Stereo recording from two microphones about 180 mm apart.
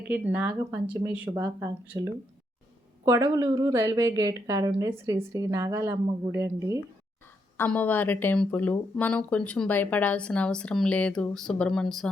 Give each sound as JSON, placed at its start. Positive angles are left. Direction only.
{"t": 0.1, "sound": "a woman's voice", "side_deg": -10}
{"t": 7.5, "sound": "speech", "side_deg": 10}